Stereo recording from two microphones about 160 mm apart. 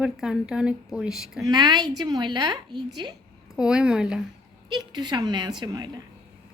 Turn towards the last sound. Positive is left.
turn(degrees=-25)  # may be behind; listen again after turning